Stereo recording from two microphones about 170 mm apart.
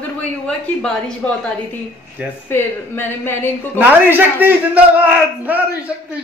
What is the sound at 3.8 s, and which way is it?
A man's voice, 10° right (ahead or behind).